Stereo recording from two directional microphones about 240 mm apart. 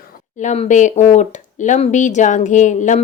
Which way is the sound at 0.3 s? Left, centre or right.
Left.